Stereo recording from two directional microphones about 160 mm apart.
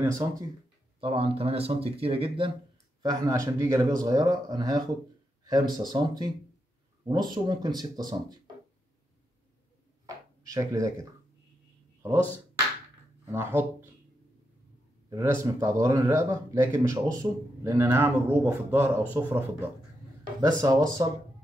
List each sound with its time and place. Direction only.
0.0 s speech: 20° right (ahead or behind)
1.0 s speech: 35° right (ahead or behind)
3.0 s speech: 20° right (ahead or behind)
10.0 s a sound: 20° right (ahead or behind)
13.3 s speech: 15° right (ahead or behind)
15.0 s speech: 20° right (ahead or behind)